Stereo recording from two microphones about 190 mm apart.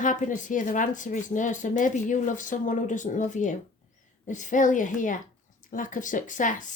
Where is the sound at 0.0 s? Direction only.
45° left (ahead or behind).